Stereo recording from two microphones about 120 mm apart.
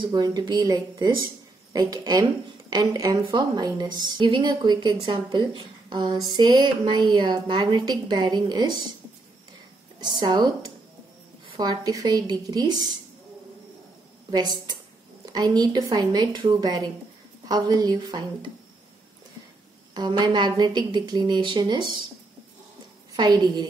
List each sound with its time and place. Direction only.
0.0 s a woman's voice: 35° right (ahead or behind)
9.9 s a woman's voice: 35° right (ahead or behind)
14.3 s a woman's voice: 35° right (ahead or behind)
19.9 s a woman's voice: 35° right (ahead or behind)
23.1 s a woman's voice: 35° right (ahead or behind)